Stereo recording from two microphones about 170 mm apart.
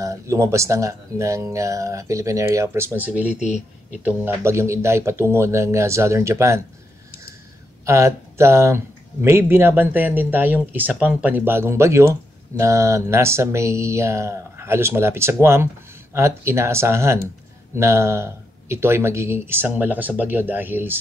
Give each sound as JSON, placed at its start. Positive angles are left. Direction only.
{"t": 0.0, "sound": "speech", "side_deg": -15}
{"t": 7.8, "sound": "speech", "side_deg": -15}